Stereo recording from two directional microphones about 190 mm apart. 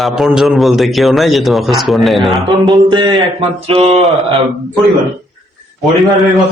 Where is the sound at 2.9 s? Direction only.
25° right (ahead or behind).